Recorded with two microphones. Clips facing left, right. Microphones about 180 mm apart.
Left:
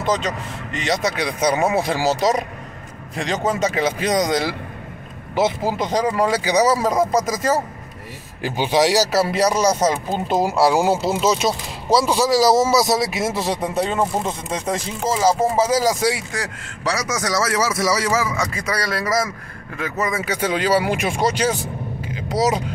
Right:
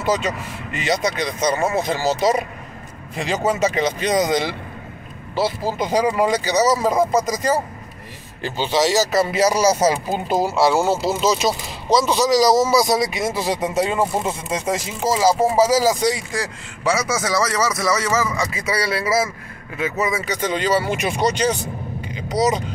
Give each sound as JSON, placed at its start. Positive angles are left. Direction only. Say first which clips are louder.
{"t": 0.0, "sound": "speech", "louder": "right 1 dB", "side_deg": -5}
{"t": 1.8, "sound": "a man's voice", "louder": "left 1 dB", "side_deg": 5}
{"t": 3.7, "sound": "speech", "louder": "even", "side_deg": 5}
{"t": 5.3, "sound": "speech", "louder": "left 2 dB", "side_deg": 15}
{"t": 5.8, "sound": "speech", "louder": "right 3 dB", "side_deg": -5}
{"t": 6.3, "sound": "speech", "louder": "left 1 dB", "side_deg": 10}
{"t": 6.8, "sound": "speech", "louder": "right 1 dB", "side_deg": 0}
{"t": 17.4, "sound": "a man's voice", "louder": "left 1 dB", "side_deg": 5}
{"t": 20.2, "sound": "speech", "louder": "left 1 dB", "side_deg": 10}
{"t": 22.0, "sound": "vehicle", "louder": "even", "side_deg": 5}